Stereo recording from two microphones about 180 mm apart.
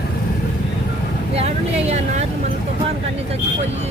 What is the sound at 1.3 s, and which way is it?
Vehicle, 35° right (ahead or behind).